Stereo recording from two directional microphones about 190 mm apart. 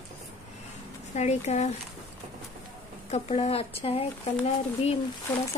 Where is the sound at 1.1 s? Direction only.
35° left (ahead or behind).